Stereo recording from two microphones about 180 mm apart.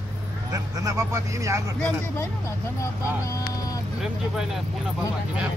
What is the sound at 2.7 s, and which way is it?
Speech, 20° left (ahead or behind).